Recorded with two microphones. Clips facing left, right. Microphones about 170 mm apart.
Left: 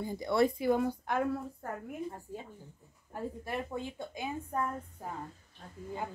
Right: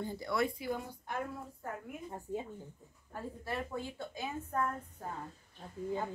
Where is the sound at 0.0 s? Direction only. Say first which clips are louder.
Left 2 dB; 15° left (ahead or behind).